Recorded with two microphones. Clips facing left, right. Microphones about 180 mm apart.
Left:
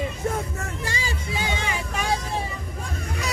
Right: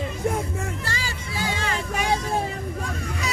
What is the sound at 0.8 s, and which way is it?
Music, 15° left (ahead or behind).